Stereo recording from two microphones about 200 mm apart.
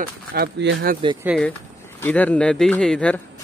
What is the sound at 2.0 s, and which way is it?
Speech, 10° left (ahead or behind).